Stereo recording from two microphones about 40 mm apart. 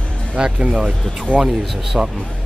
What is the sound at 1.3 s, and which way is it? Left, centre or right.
Speech, left.